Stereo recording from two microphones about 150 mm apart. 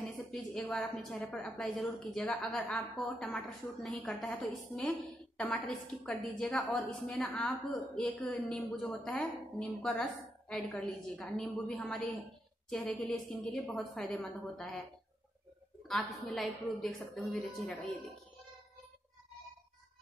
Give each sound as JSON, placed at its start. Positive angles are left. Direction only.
{"t": 0.0, "sound": "a sound", "side_deg": 5}
{"t": 1.3, "sound": "a woman's voice", "side_deg": 5}
{"t": 15.9, "sound": "a woman's voice", "side_deg": 0}